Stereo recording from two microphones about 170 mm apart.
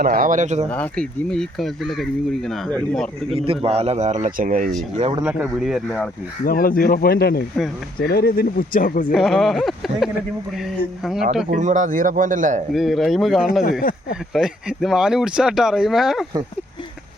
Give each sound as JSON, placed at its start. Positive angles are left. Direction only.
{"t": 0.0, "sound": "speech", "side_deg": -55}
{"t": 0.7, "sound": "speech", "side_deg": 5}
{"t": 3.2, "sound": "speech", "side_deg": -35}
{"t": 5.2, "sound": "speech", "side_deg": -5}
{"t": 6.4, "sound": "speech", "side_deg": 55}
{"t": 9.1, "sound": "speech", "side_deg": 0}
{"t": 11.4, "sound": "speech", "side_deg": -45}
{"t": 12.7, "sound": "speech", "side_deg": 0}